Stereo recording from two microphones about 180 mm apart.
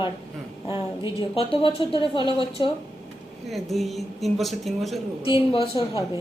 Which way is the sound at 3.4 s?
Centre (ahead or behind).